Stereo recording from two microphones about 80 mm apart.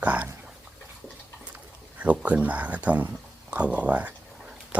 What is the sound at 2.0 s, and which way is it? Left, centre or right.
Speech, centre.